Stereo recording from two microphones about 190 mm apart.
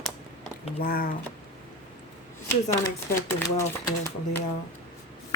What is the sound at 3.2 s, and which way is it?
Speech, 15° left (ahead or behind).